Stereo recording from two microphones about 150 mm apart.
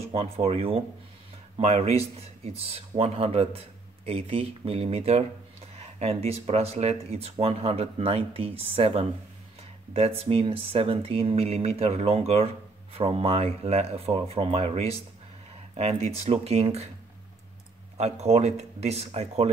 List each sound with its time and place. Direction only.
0.1 s speech: 40° right (ahead or behind)
17.9 s speech: 45° right (ahead or behind)